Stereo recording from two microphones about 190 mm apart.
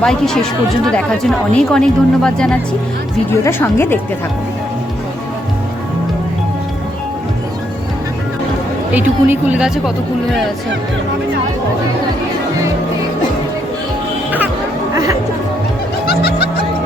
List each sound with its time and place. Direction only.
0.0 s speech: centre (ahead or behind)
8.9 s speech: 10° right (ahead or behind)
16.0 s music: 55° left (ahead or behind)